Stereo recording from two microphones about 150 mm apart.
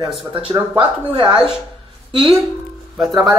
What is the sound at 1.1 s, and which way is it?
Speech, 35° right (ahead or behind).